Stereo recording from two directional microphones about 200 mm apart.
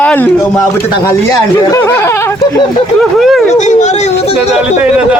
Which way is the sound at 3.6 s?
35° left (ahead or behind).